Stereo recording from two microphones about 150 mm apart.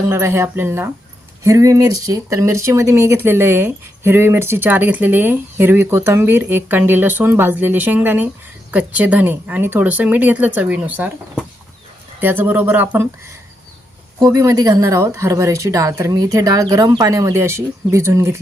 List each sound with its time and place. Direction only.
0.1 s speech: 20° right (ahead or behind)
14.2 s speech: 25° right (ahead or behind)